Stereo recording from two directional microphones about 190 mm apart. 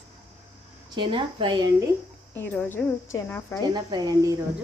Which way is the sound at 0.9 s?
25° right (ahead or behind).